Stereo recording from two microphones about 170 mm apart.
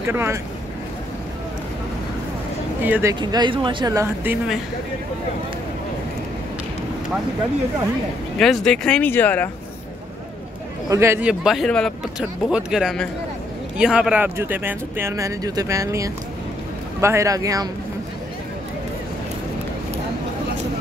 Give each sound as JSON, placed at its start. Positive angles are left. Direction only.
{"t": 0.0, "sound": "speech", "side_deg": -15}
{"t": 2.8, "sound": "speech", "side_deg": -15}
{"t": 3.2, "sound": "speech", "side_deg": -25}
{"t": 8.4, "sound": "speech", "side_deg": 0}
{"t": 10.9, "sound": "speech", "side_deg": -15}